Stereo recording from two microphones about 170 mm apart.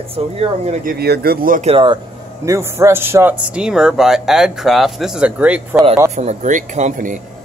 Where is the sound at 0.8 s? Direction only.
70° right (ahead or behind).